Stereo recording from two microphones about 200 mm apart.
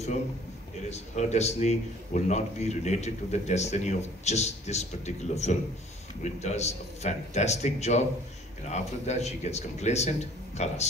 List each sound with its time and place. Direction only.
0.8 s a man's voice: 35° left (ahead or behind)